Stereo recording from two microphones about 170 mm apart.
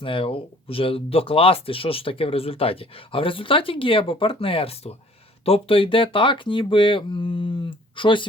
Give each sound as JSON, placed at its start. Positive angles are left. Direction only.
{"t": 0.0, "sound": "speech", "side_deg": 30}